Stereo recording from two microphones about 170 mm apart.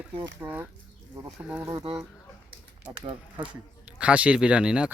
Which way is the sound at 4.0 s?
5° right (ahead or behind).